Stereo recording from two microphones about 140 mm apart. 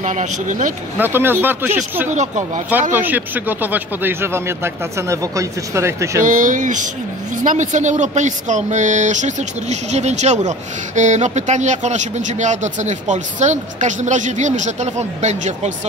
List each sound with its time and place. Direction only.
0.0 s speech: 60° right (ahead or behind)
0.9 s speech: 15° right (ahead or behind)
2.0 s speech: 60° right (ahead or behind)
2.9 s speech: 15° right (ahead or behind)
6.2 s speech: 65° right (ahead or behind)